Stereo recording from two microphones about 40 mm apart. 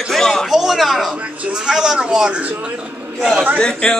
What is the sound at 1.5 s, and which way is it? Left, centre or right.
Speech, centre.